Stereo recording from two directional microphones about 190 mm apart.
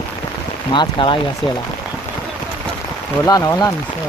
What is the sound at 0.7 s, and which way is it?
Speech, 25° left (ahead or behind).